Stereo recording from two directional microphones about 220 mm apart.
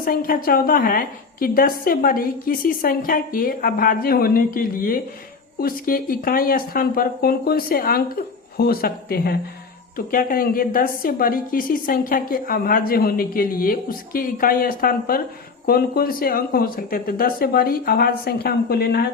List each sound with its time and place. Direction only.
0.0 s a woman's voice: 40° left (ahead or behind)